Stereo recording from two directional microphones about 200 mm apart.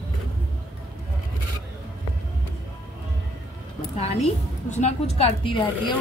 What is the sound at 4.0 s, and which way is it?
A woman's voice, 30° left (ahead or behind).